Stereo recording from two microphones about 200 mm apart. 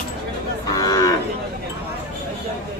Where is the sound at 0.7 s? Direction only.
15° left (ahead or behind).